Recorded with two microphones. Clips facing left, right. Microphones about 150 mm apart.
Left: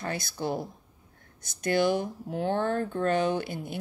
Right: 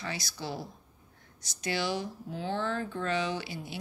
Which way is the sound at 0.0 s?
55° left (ahead or behind).